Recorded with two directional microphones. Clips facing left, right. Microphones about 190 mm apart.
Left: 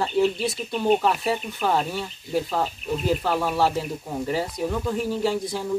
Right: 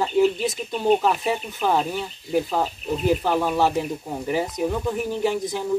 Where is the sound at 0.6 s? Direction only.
5° right (ahead or behind).